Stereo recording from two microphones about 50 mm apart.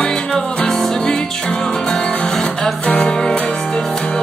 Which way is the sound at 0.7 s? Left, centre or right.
Centre.